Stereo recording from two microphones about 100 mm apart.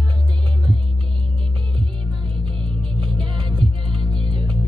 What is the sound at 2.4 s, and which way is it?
Music, 55° right (ahead or behind).